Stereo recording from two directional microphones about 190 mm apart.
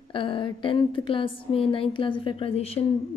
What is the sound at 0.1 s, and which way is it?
A woman's voice, 25° left (ahead or behind).